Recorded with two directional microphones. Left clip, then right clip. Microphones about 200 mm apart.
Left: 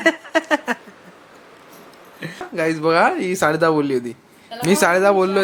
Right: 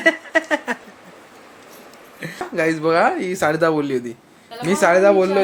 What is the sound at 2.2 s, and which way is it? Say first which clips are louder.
Speech: right 1 dB; 5° left (ahead or behind).